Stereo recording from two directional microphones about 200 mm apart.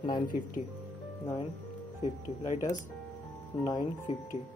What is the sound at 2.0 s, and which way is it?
Speech, 35° left (ahead or behind).